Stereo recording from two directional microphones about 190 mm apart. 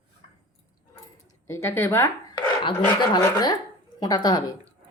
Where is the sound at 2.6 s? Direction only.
25° left (ahead or behind).